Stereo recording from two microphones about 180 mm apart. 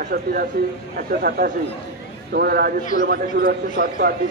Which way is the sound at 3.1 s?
55° right (ahead or behind).